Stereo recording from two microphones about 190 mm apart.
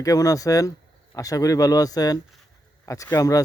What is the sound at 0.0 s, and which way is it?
Speech, 20° left (ahead or behind).